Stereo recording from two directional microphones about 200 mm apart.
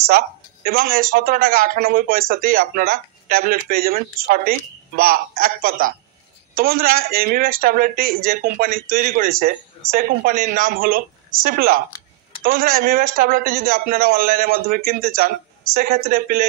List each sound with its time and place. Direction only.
0.7 s a man's voice: 45° right (ahead or behind)